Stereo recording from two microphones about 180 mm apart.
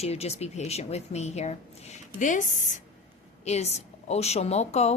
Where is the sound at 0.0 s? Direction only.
35° left (ahead or behind).